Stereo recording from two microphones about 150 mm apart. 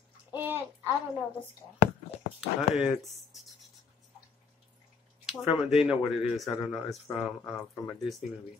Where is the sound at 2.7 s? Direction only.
Centre (ahead or behind).